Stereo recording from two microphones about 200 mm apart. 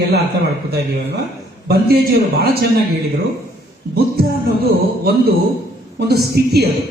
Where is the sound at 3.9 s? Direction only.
50° right (ahead or behind).